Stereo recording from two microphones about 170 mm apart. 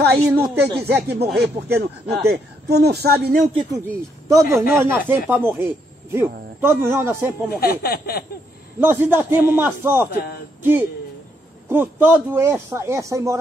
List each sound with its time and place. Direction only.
0.0 s speech: 70° right (ahead or behind)
4.3 s a man's voice: 20° right (ahead or behind)
7.6 s speech: 65° left (ahead or behind)
8.7 s a man's voice: 10° right (ahead or behind)